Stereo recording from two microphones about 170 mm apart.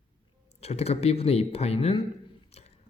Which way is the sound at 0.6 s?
40° left (ahead or behind).